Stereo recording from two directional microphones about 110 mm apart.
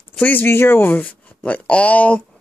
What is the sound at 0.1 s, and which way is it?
Speech, 15° left (ahead or behind).